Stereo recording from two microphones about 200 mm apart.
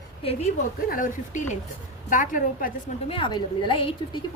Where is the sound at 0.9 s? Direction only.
40° left (ahead or behind).